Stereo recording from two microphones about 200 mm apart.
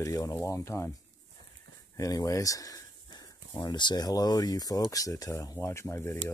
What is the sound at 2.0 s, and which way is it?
Speech, 15° left (ahead or behind).